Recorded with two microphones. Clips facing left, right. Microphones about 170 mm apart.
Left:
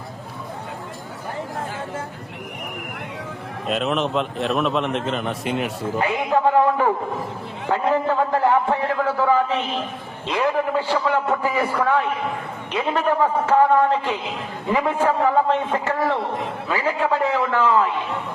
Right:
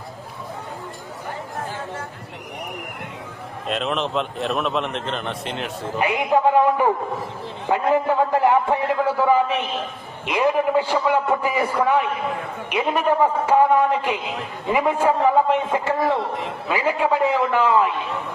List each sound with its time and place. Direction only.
3.7 s a man's voice: centre (ahead or behind)
6.0 s a man's voice: 15° right (ahead or behind)